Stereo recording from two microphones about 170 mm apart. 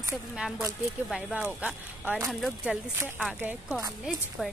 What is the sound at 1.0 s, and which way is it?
Speech, centre (ahead or behind).